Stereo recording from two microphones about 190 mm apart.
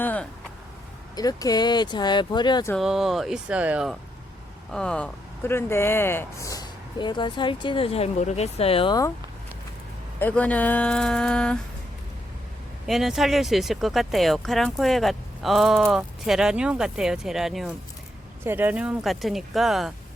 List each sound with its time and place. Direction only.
0.0 s a sound: 10° left (ahead or behind)
1.1 s speech: 20° left (ahead or behind)
2.7 s speech: centre (ahead or behind)
4.7 s speech: 5° left (ahead or behind); by 9.1 s 20° left (ahead or behind)
10.2 s speech: 10° left (ahead or behind)
12.9 s speech: centre (ahead or behind)